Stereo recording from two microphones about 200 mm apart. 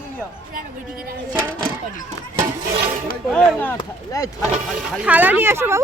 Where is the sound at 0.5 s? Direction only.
45° right (ahead or behind).